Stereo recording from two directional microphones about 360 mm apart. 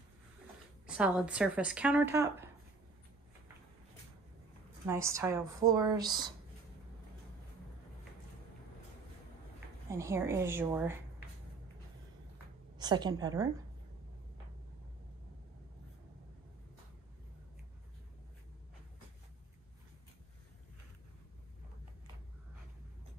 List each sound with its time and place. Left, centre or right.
0.8 s speech: centre
4.8 s speech: centre
9.8 s speech: centre
12.7 s a woman's voice: centre